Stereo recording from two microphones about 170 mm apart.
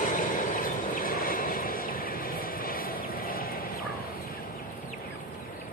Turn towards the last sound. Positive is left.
turn(degrees=60)  # may be behind; listen again after turning